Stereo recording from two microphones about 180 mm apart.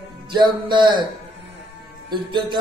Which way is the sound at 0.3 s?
25° right (ahead or behind).